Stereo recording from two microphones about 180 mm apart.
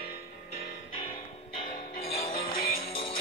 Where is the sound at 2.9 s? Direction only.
25° left (ahead or behind).